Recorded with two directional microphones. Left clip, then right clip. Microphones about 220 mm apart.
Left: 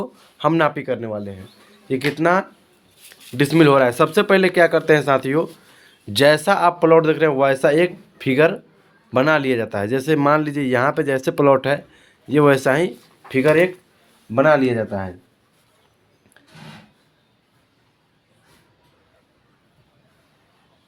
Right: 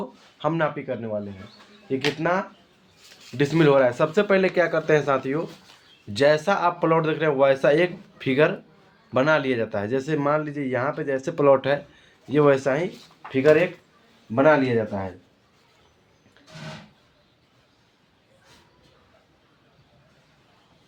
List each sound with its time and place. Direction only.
0.3 s speech: 40° left (ahead or behind)
3.2 s speech: 40° left (ahead or behind)
13.3 s speech: 55° left (ahead or behind)